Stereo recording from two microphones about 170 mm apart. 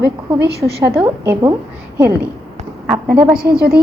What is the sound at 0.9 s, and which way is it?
Speech, 15° right (ahead or behind).